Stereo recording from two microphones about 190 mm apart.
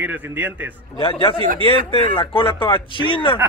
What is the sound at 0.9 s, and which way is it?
Speech, 30° left (ahead or behind).